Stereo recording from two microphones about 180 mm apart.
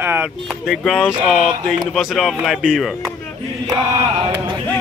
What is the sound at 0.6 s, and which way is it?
Speech, centre (ahead or behind).